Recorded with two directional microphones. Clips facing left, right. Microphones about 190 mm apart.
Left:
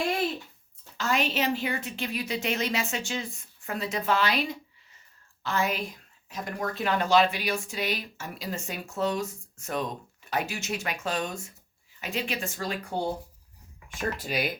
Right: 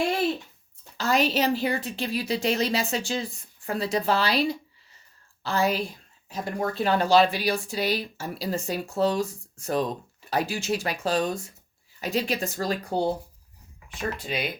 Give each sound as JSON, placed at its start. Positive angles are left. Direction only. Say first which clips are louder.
{"t": 0.9, "sound": "a woman's voice", "louder": "right 4 dB", "side_deg": -35}
{"t": 14.2, "sound": "speech", "louder": "even", "side_deg": 5}